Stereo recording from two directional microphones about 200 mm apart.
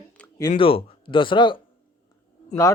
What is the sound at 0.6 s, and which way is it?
Speech, 25° left (ahead or behind).